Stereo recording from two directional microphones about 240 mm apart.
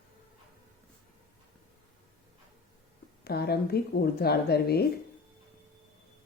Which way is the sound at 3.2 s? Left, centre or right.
Left.